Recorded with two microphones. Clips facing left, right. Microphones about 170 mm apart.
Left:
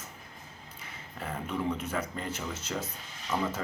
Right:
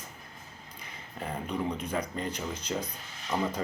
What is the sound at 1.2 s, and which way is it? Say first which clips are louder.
Speech: even; 15° right (ahead or behind).